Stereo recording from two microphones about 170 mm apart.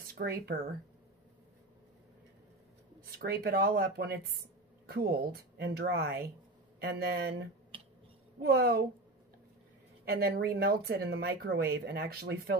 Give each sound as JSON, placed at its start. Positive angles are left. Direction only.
{"t": 0.2, "sound": "speech", "side_deg": -65}
{"t": 3.0, "sound": "speech", "side_deg": -60}
{"t": 7.7, "sound": "finger snapping", "side_deg": -30}
{"t": 8.4, "sound": "speech", "side_deg": -70}
{"t": 10.0, "sound": "speech", "side_deg": -65}